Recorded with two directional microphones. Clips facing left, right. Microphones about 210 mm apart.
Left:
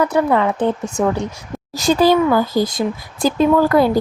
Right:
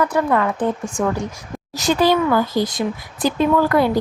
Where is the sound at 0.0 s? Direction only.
25° left (ahead or behind).